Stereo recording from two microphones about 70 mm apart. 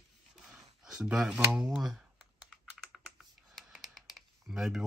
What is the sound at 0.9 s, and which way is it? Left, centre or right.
Speech, centre.